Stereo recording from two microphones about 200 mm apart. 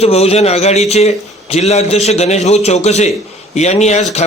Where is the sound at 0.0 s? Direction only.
30° left (ahead or behind).